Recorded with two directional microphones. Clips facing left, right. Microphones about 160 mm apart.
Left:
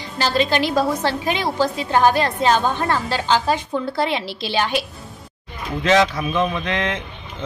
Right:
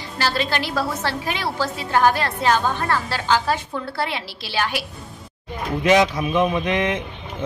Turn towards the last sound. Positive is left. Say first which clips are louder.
# right 2 dB
turn(degrees=-15)  # may be behind; listen again after turning